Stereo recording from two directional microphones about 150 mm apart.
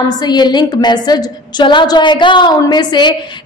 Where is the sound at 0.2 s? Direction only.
30° left (ahead or behind).